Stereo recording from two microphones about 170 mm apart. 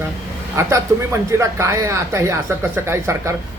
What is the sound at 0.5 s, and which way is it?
Speech, 15° right (ahead or behind).